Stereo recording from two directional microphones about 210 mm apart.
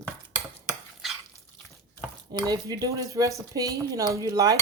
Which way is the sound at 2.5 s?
15° right (ahead or behind).